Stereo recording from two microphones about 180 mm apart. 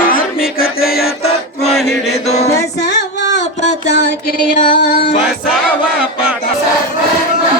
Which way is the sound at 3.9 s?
55° left (ahead or behind).